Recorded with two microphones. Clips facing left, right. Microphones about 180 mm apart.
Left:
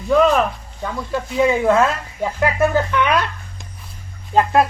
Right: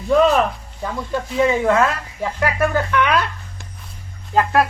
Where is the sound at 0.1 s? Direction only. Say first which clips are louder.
Even; centre (ahead or behind).